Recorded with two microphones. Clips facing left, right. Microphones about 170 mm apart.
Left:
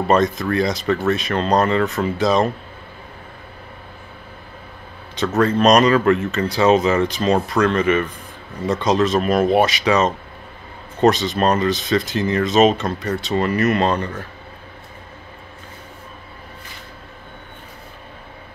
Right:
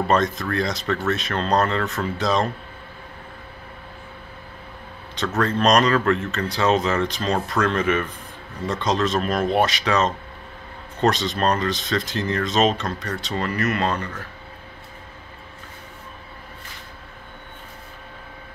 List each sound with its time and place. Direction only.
0.1 s speech: 5° left (ahead or behind)
5.4 s speech: 5° left (ahead or behind)
13.7 s speech: 30° left (ahead or behind)